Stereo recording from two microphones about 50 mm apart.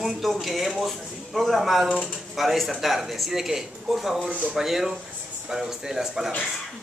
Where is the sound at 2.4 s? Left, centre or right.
Centre.